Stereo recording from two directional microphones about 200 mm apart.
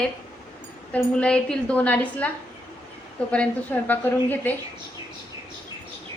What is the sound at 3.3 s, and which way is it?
A woman's voice, 5° left (ahead or behind).